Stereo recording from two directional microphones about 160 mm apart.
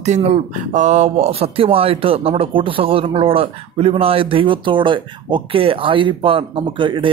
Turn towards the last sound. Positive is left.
turn(degrees=-30)  # may be behind; listen again after turning